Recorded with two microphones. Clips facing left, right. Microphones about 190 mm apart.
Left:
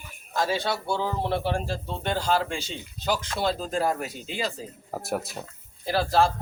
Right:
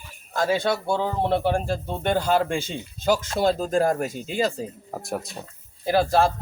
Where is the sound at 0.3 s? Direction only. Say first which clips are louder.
Right 4 dB; 50° right (ahead or behind).